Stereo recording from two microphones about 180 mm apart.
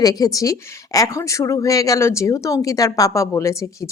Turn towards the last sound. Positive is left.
turn(degrees=15)  # may be behind; listen again after turning